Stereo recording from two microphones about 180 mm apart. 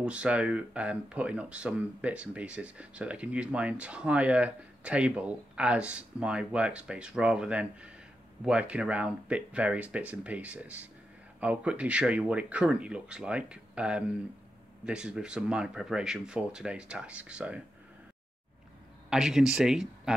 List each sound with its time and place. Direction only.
0.0 s speech: 5° right (ahead or behind)
19.0 s speech: 5° right (ahead or behind)